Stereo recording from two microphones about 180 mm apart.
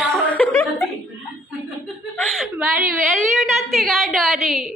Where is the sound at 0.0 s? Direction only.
5° left (ahead or behind).